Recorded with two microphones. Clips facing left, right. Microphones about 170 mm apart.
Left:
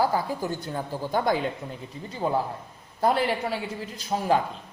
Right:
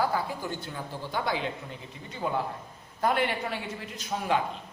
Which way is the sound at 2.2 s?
35° left (ahead or behind).